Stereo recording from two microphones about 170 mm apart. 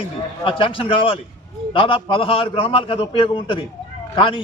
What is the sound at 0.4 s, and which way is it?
A man's voice, 30° left (ahead or behind).